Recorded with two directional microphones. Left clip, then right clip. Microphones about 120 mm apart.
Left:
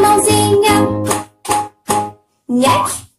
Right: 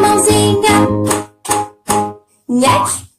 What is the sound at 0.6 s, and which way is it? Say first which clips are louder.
Music: right 1 dB; 25° right (ahead or behind).